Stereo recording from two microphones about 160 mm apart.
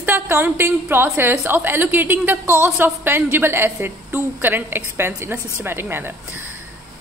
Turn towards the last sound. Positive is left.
turn(degrees=-15)  # may be behind; listen again after turning